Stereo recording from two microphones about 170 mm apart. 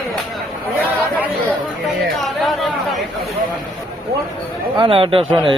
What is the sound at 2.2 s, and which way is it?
Speech, centre (ahead or behind).